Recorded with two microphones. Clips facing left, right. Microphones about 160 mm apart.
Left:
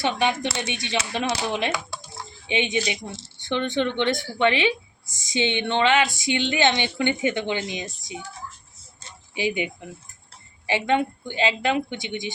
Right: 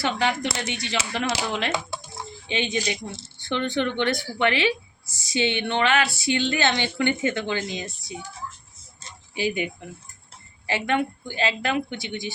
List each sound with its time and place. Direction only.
0.0 s speech: 20° left (ahead or behind)
9.3 s speech: 20° left (ahead or behind)
10.7 s speech: 20° left (ahead or behind)